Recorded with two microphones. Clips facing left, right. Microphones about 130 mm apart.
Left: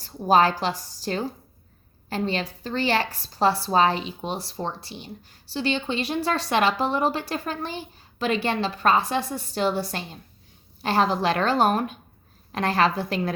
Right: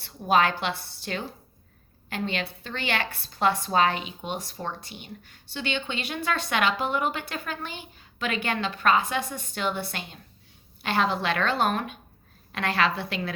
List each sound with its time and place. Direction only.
0.2 s a woman's voice: 35° left (ahead or behind)